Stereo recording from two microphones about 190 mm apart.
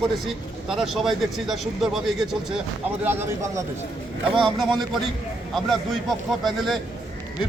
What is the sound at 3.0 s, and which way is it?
Speech, 10° right (ahead or behind).